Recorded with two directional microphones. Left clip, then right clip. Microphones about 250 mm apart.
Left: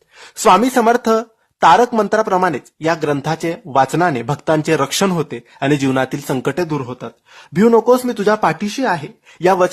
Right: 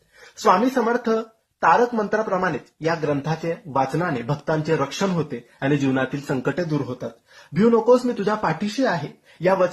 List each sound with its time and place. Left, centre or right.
0.4 s speech: left